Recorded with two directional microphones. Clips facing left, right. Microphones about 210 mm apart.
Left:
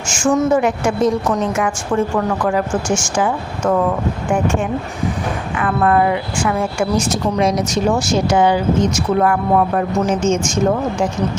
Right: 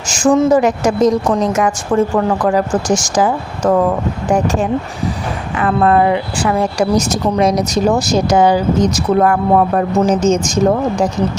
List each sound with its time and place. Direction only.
0.1 s a woman's voice: 35° right (ahead or behind)
5.5 s a woman's voice: 35° right (ahead or behind)